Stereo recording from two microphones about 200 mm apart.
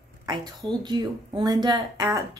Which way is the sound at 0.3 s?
20° right (ahead or behind).